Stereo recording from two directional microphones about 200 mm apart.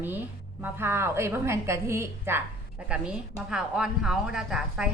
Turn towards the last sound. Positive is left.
turn(degrees=-5)  # may be behind; listen again after turning